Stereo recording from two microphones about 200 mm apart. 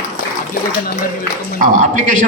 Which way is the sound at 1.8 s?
40° right (ahead or behind).